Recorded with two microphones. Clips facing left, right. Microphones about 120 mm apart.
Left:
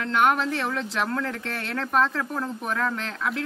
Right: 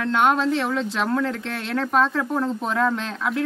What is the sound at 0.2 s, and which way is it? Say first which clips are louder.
Speech: right 2 dB; 20° right (ahead or behind).